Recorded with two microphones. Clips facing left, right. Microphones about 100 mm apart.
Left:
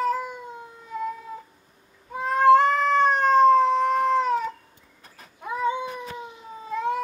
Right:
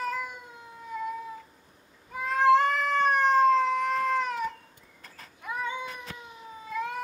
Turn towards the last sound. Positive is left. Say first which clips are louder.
# left 6 dB
turn(degrees=30)  # may be behind; listen again after turning